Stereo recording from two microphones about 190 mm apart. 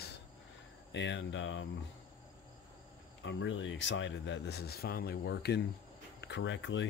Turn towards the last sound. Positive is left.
turn(degrees=75)  # may be behind; listen again after turning